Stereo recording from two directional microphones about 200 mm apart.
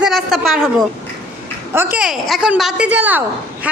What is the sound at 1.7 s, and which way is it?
A woman's voice, 5° right (ahead or behind).